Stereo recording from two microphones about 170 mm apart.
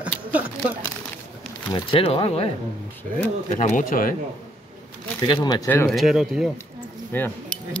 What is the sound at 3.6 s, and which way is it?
Speech, 50° left (ahead or behind).